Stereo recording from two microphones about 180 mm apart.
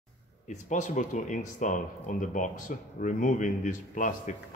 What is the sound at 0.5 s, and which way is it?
Speech, 40° left (ahead or behind).